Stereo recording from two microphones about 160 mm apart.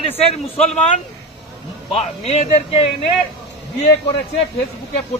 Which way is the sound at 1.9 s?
40° left (ahead or behind).